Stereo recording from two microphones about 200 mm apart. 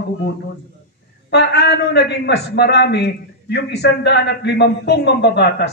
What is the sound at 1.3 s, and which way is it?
A man's voice, 55° left (ahead or behind).